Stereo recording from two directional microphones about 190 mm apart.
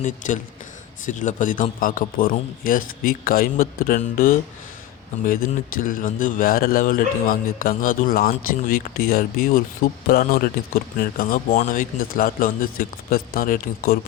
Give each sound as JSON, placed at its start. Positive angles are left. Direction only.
{"t": 0.2, "sound": "speech", "side_deg": 40}